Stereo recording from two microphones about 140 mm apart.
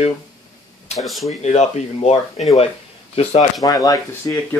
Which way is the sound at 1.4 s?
50° left (ahead or behind).